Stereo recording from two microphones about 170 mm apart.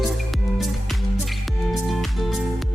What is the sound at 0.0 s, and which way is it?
Music, centre (ahead or behind).